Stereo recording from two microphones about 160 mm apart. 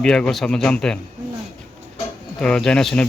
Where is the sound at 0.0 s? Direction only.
5° left (ahead or behind).